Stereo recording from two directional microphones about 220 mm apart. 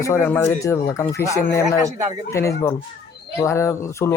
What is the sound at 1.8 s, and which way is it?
Speech, 15° right (ahead or behind).